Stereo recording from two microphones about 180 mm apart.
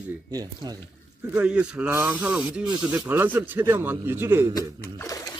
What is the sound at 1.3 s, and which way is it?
Speech, 5° right (ahead or behind).